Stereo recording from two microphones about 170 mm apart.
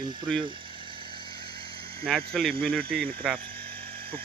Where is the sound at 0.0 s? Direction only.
25° right (ahead or behind).